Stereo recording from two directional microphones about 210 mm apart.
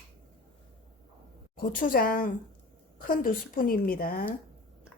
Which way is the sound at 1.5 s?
45° left (ahead or behind).